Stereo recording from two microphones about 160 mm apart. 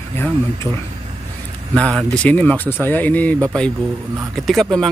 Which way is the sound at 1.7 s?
5° left (ahead or behind).